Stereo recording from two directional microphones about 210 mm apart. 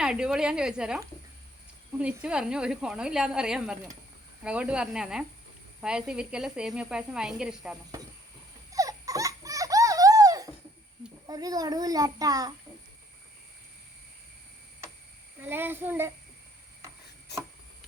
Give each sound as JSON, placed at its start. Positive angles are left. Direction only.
{"t": 0.0, "sound": "speech", "side_deg": -5}
{"t": 2.0, "sound": "speech", "side_deg": -5}
{"t": 8.7, "sound": "dog", "side_deg": -15}
{"t": 11.3, "sound": "a child's voice", "side_deg": -15}
{"t": 15.4, "sound": "a child's voice", "side_deg": -10}